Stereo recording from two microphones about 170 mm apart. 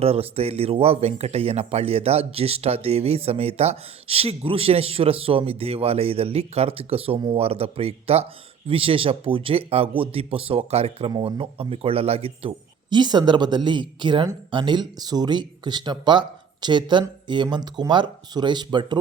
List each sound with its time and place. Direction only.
0.0 s speech: 35° right (ahead or behind)